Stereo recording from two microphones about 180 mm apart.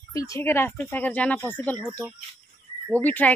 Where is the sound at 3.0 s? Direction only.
10° left (ahead or behind).